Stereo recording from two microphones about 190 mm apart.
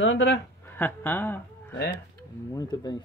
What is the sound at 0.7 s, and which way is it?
Speech, 10° left (ahead or behind).